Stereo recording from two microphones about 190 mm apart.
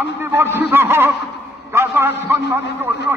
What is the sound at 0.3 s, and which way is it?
A man's voice, 10° right (ahead or behind).